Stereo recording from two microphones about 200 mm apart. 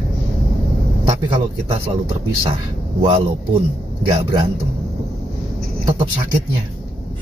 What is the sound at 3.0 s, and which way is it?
A man's voice, 30° right (ahead or behind).